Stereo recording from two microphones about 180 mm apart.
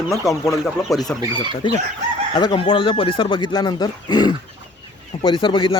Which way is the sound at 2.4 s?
25° left (ahead or behind).